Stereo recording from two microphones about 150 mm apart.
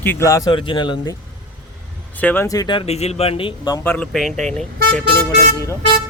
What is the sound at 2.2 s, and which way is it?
Speech, 15° left (ahead or behind).